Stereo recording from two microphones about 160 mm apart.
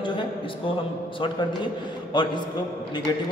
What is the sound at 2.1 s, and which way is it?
Speech, 30° left (ahead or behind).